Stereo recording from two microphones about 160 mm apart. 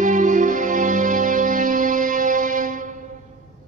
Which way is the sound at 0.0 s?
55° right (ahead or behind).